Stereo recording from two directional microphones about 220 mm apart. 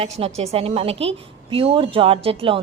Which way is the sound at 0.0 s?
30° right (ahead or behind).